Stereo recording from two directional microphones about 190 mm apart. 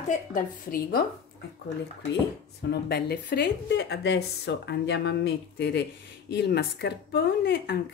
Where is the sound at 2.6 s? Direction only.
60° left (ahead or behind).